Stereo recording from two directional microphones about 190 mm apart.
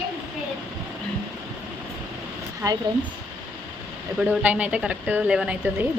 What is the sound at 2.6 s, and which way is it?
Speech, 15° right (ahead or behind).